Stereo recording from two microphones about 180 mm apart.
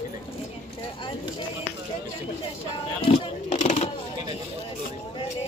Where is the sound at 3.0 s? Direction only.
35° left (ahead or behind).